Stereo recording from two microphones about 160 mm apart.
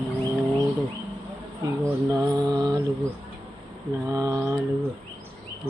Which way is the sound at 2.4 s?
25° right (ahead or behind).